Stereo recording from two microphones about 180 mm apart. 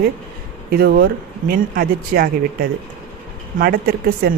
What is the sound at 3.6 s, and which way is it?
Speech, 55° right (ahead or behind).